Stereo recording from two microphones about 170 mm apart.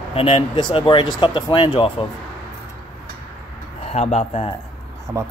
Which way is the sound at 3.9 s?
40° left (ahead or behind).